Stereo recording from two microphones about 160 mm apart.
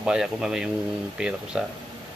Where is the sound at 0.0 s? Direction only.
5° right (ahead or behind).